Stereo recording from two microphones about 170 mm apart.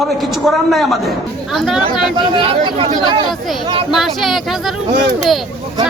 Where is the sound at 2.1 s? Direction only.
30° right (ahead or behind).